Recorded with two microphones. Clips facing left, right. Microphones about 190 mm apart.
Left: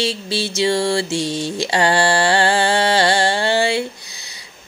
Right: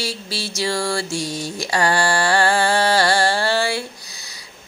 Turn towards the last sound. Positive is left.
turn(degrees=20)  # may be behind; listen again after turning